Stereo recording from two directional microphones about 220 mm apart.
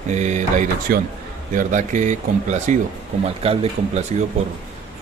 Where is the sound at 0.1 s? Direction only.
35° right (ahead or behind).